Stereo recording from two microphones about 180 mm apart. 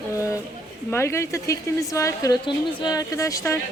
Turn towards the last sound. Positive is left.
turn(degrees=15)  # may be behind; listen again after turning